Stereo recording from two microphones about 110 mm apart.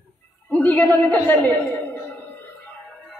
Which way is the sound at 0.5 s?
15° left (ahead or behind).